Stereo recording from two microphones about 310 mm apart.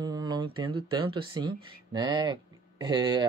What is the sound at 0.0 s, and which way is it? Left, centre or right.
Speech, centre.